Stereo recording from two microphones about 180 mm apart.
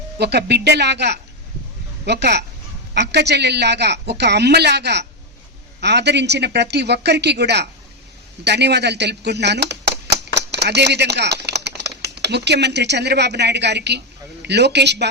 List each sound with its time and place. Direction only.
0.2 s a woman's voice: 65° right (ahead or behind)